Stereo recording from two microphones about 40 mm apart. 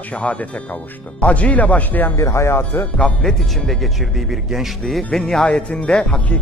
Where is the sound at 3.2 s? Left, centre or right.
Centre.